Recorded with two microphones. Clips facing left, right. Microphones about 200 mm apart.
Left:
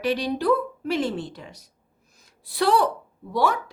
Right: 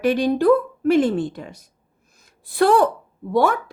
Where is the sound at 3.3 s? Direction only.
50° right (ahead or behind).